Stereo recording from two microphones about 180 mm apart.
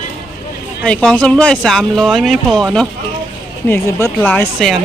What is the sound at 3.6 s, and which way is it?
Speech, 15° left (ahead or behind).